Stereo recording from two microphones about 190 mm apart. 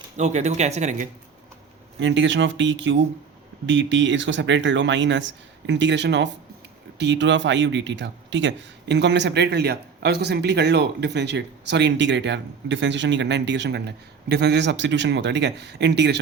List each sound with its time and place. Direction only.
0.2 s speech: 35° right (ahead or behind)
2.0 s speech: 75° right (ahead or behind)